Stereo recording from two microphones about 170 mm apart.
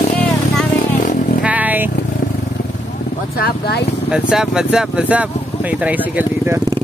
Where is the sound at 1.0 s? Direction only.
55° left (ahead or behind).